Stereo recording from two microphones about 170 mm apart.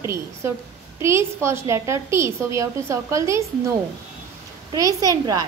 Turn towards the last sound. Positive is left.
turn(degrees=-20)  # may be behind; listen again after turning